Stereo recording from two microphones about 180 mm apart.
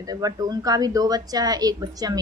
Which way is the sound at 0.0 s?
20° right (ahead or behind).